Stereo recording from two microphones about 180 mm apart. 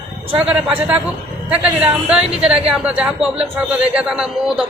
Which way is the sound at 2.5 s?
35° right (ahead or behind).